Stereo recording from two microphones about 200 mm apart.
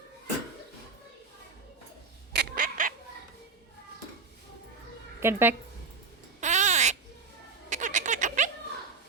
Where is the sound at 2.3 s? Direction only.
50° right (ahead or behind).